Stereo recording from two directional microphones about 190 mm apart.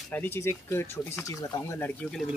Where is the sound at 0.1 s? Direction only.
10° left (ahead or behind).